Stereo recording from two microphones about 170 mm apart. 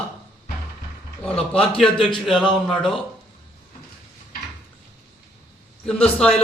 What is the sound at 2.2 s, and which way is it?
Speech, centre (ahead or behind).